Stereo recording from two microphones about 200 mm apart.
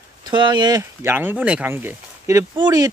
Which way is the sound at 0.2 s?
20° right (ahead or behind).